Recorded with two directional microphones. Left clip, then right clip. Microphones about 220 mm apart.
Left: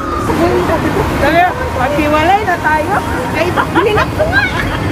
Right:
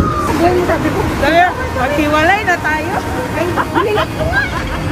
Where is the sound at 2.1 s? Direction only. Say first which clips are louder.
Left 1 dB; 20° right (ahead or behind).